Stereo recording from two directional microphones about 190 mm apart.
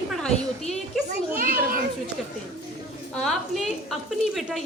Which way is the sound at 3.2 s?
Centre (ahead or behind).